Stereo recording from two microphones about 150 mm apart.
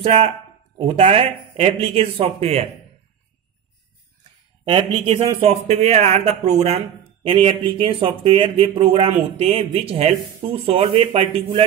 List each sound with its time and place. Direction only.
0.0 s speech: 40° right (ahead or behind)
4.6 s speech: 35° right (ahead or behind)